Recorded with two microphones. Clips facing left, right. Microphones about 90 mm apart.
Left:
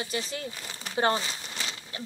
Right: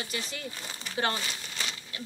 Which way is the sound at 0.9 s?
25° left (ahead or behind).